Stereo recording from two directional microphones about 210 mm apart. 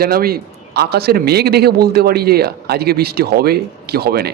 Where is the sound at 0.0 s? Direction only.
45° right (ahead or behind).